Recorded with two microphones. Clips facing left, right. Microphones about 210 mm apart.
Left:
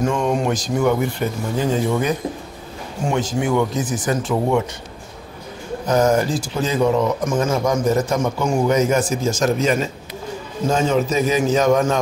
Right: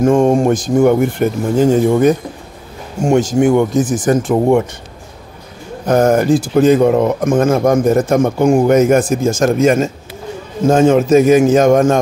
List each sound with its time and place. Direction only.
0.0 s speech: 50° right (ahead or behind)
5.9 s speech: 55° right (ahead or behind)